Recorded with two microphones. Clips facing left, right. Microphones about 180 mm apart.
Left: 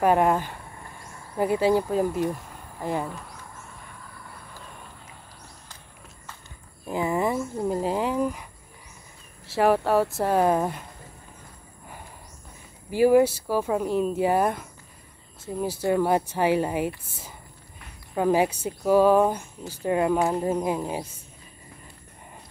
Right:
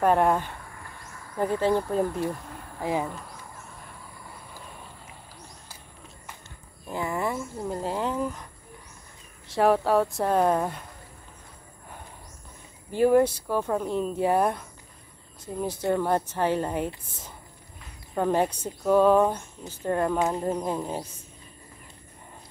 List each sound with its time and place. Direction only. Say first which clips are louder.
0.0 s speech: left 1 dB; 5° left (ahead or behind)
0.7 s a sound: left 1 dB; 25° left (ahead or behind)
1.4 s speech: left 2 dB; 10° left (ahead or behind)
6.9 s speech: left 4 dB; 15° left (ahead or behind)
9.5 s speech: left 1 dB; centre (ahead or behind)
12.9 s speech: left 2 dB; 5° left (ahead or behind)